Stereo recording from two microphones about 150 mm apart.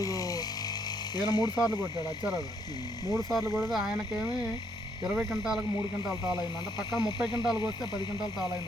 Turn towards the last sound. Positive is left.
turn(degrees=30)  # may be behind; listen again after turning